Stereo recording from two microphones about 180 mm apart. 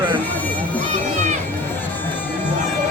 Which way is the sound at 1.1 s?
40° right (ahead or behind).